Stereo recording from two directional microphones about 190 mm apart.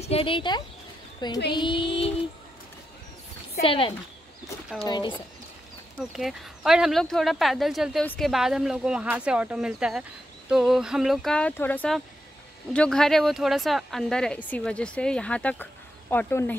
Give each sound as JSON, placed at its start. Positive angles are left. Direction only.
{"t": 0.0, "sound": "speech", "side_deg": 30}
{"t": 3.6, "sound": "speech", "side_deg": 30}
{"t": 5.9, "sound": "speech", "side_deg": 0}